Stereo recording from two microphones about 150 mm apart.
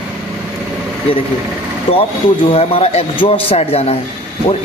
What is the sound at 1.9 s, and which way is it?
A woman's voice, 40° left (ahead or behind).